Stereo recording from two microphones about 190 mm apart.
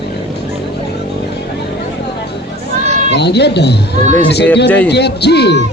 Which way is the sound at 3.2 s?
60° left (ahead or behind).